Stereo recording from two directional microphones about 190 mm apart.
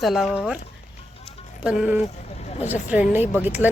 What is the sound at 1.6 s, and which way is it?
A woman's voice, 5° right (ahead or behind).